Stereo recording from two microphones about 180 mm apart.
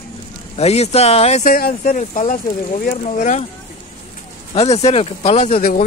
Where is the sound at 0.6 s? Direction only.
35° left (ahead or behind).